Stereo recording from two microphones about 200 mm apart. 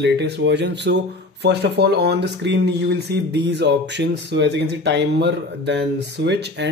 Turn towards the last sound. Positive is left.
turn(degrees=-60)  # may be behind; listen again after turning